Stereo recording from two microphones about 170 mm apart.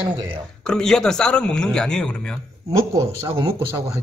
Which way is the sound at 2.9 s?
20° right (ahead or behind).